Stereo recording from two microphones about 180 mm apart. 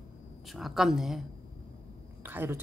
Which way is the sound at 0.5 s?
Centre (ahead or behind).